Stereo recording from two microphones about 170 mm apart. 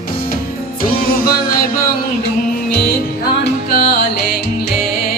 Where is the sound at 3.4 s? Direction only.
55° left (ahead or behind).